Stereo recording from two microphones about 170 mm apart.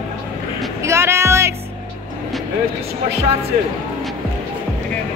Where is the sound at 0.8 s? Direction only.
15° right (ahead or behind).